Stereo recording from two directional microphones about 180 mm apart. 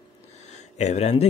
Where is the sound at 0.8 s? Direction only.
35° left (ahead or behind).